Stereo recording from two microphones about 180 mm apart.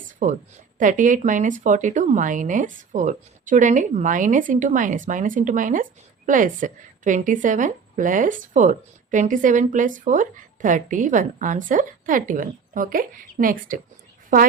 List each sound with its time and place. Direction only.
0.2 s speech: 45° right (ahead or behind)